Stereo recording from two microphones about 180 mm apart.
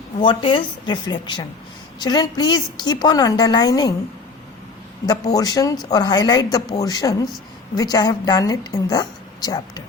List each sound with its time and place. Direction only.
0.2 s a woman's voice: 25° left (ahead or behind)
5.0 s a woman's voice: 20° left (ahead or behind)